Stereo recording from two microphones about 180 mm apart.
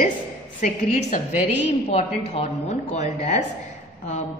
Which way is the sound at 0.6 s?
45° left (ahead or behind).